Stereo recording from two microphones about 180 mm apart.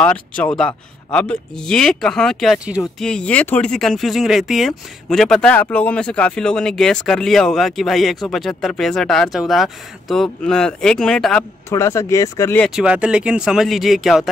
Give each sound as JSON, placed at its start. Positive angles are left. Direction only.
{"t": 0.0, "sound": "speech", "side_deg": 10}
{"t": 11.7, "sound": "speech", "side_deg": 15}
{"t": 12.8, "sound": "speech", "side_deg": -5}